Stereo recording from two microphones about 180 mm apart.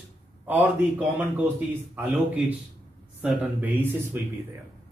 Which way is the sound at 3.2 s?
10° right (ahead or behind).